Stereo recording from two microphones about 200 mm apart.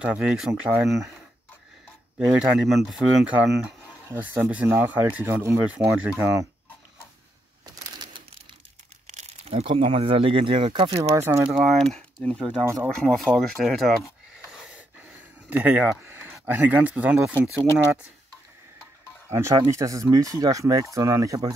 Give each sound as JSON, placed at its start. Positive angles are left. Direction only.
{"t": 0.0, "sound": "speech", "side_deg": -5}
{"t": 2.1, "sound": "speech", "side_deg": 0}
{"t": 7.6, "sound": "a sound", "side_deg": -20}
{"t": 9.0, "sound": "speech", "side_deg": -35}
{"t": 11.1, "sound": "speech", "side_deg": -10}
{"t": 11.5, "sound": "speech", "side_deg": 0}
{"t": 14.5, "sound": "gasp", "side_deg": -5}
{"t": 15.5, "sound": "speech", "side_deg": -5}
{"t": 19.2, "sound": "speech", "side_deg": -15}